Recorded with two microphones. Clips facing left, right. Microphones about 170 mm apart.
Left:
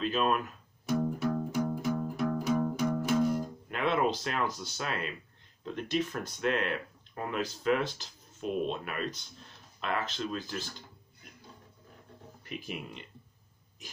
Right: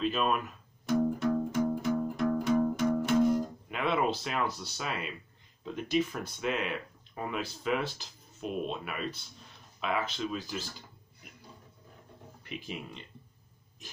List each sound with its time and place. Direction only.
0.0 s music: centre (ahead or behind)
3.6 s speech: centre (ahead or behind)
12.4 s speech: 45° left (ahead or behind)